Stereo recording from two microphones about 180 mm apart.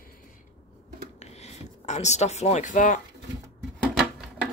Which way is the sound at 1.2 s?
40° left (ahead or behind).